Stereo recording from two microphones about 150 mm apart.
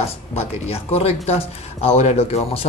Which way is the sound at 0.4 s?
45° left (ahead or behind).